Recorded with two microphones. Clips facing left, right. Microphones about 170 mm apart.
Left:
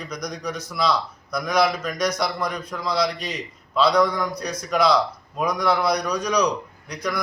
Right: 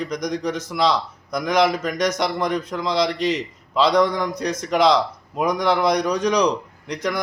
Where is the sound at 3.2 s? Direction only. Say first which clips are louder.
Right 9 dB; 90° right.